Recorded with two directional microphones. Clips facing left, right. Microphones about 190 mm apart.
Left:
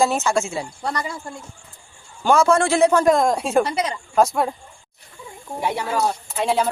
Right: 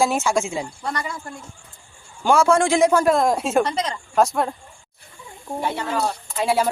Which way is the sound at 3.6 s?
10° left (ahead or behind).